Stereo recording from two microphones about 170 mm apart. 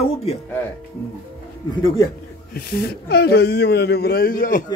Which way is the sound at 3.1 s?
75° left (ahead or behind).